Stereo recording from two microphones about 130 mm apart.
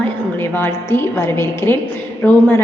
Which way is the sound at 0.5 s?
20° left (ahead or behind).